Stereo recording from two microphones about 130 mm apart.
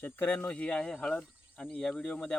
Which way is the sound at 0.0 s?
15° left (ahead or behind).